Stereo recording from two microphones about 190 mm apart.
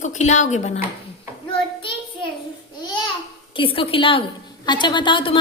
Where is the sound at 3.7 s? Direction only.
30° left (ahead or behind).